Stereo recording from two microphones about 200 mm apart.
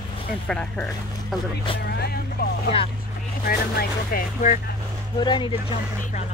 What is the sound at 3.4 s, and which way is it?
Speech, 50° left (ahead or behind).